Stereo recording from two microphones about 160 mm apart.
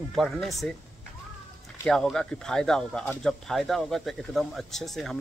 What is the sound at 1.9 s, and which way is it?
Speech, 5° left (ahead or behind).